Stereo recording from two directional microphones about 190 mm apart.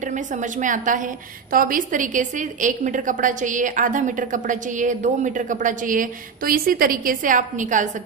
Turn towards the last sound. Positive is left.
turn(degrees=-40)  # may be behind; listen again after turning